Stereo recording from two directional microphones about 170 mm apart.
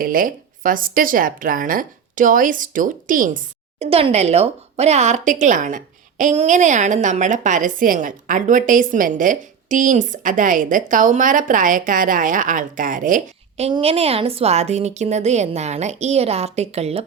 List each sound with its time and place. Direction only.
0.0 s a woman's voice: 55° right (ahead or behind)
3.8 s a woman's voice: 35° right (ahead or behind); by 13.7 s 50° right (ahead or behind)
13.7 s a woman's voice: 35° right (ahead or behind)